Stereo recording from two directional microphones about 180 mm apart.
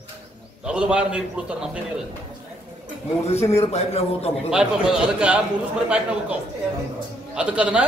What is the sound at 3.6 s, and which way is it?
Speech, 35° left (ahead or behind).